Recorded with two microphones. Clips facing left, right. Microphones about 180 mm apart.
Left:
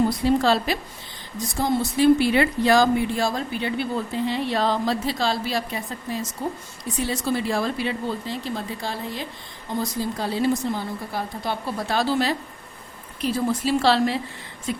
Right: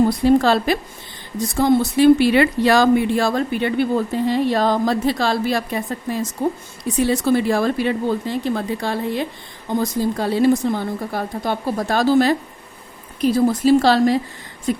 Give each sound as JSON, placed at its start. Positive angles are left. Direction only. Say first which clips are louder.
{"t": 0.3, "sound": "speech", "louder": "right 6 dB", "side_deg": -55}
{"t": 1.5, "sound": "speech", "louder": "right 6 dB", "side_deg": -65}
{"t": 11.6, "sound": "speech", "louder": "right 6 dB", "side_deg": -45}